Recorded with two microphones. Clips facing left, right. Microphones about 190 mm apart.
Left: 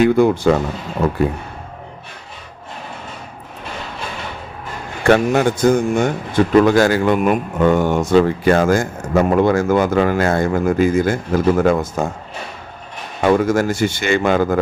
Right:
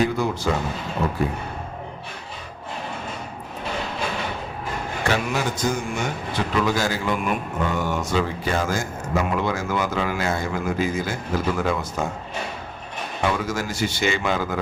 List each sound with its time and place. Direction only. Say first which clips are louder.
0.0 s speech: left 9 dB; 60° left (ahead or behind)
5.0 s a man's voice: left 11 dB; 55° left (ahead or behind)
13.2 s a man's voice: left 10 dB; 50° left (ahead or behind)